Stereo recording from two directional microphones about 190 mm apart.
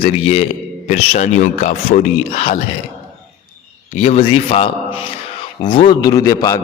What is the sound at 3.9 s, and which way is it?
A man's voice, 35° left (ahead or behind).